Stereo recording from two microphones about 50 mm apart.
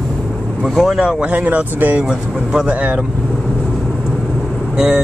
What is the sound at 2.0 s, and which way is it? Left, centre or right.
Speech, centre.